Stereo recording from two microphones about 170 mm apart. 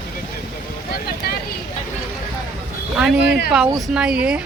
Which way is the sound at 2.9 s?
5° right (ahead or behind).